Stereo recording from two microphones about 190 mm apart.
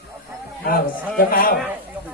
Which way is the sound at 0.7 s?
50° left (ahead or behind).